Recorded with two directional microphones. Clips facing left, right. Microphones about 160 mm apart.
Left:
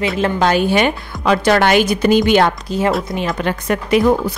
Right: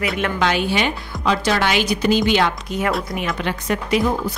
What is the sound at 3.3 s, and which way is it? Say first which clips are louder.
A woman's voice: left 4 dB; 45° left (ahead or behind).